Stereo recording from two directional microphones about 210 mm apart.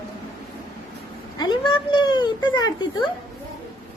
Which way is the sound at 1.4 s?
20° left (ahead or behind).